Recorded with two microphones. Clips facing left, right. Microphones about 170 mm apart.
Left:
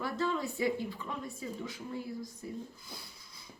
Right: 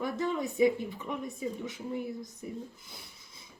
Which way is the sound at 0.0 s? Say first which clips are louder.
Right 2 dB; 20° right (ahead or behind).